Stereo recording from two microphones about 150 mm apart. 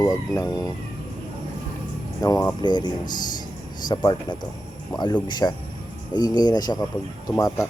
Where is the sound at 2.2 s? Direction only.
25° left (ahead or behind).